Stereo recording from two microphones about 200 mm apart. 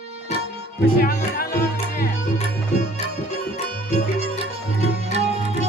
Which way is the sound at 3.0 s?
30° left (ahead or behind).